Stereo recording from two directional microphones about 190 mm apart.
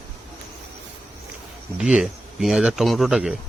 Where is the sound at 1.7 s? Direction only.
5° right (ahead or behind).